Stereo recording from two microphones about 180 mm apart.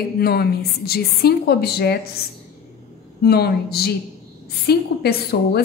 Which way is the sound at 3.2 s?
60° left (ahead or behind).